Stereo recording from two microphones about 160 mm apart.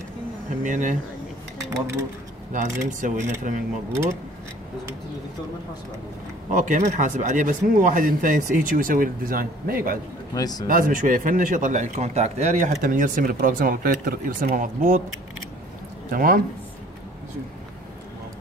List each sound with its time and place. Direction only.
0.7 s speech: 55° right (ahead or behind)
2.5 s speech: 50° right (ahead or behind)
6.5 s speech: 50° right (ahead or behind)
10.3 s speech: 25° left (ahead or behind)
10.7 s speech: 60° right (ahead or behind)
12.8 s speech: 55° right (ahead or behind)
16.1 s speech: 65° right (ahead or behind)